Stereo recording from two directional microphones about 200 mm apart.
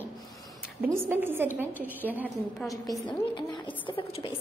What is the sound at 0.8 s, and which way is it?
A woman's voice, 10° right (ahead or behind).